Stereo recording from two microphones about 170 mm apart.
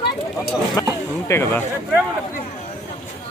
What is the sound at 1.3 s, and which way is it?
Speech, 15° left (ahead or behind).